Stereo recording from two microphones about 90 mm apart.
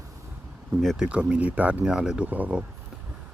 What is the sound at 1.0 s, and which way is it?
Speech, 15° right (ahead or behind).